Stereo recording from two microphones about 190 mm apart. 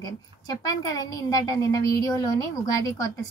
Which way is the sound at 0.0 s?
20° left (ahead or behind).